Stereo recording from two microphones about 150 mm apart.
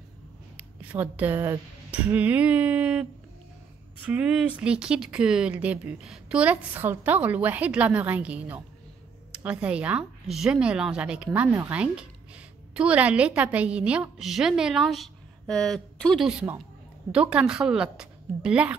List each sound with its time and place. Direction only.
0.6 s speech: 10° right (ahead or behind)
4.1 s speech: 10° right (ahead or behind)